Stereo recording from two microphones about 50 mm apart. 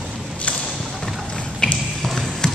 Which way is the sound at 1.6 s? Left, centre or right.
Centre.